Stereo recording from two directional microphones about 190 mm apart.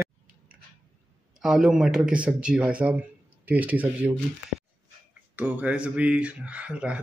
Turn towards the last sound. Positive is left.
turn(degrees=-5)  # may be behind; listen again after turning